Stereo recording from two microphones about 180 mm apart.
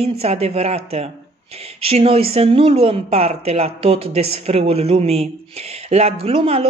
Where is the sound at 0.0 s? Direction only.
35° right (ahead or behind).